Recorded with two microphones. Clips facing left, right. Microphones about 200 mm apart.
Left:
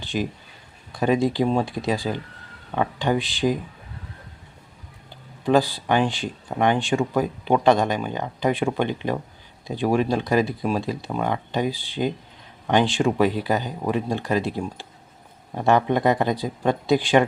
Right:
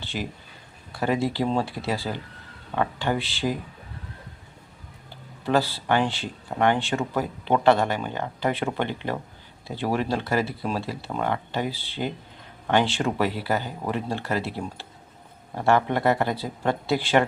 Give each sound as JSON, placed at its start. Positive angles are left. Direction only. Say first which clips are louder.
{"t": 0.0, "sound": "a sound", "louder": "left 6 dB", "side_deg": 15}
{"t": 0.9, "sound": "speech", "louder": "left 4 dB", "side_deg": 15}
{"t": 5.5, "sound": "speech", "louder": "left 3 dB", "side_deg": 15}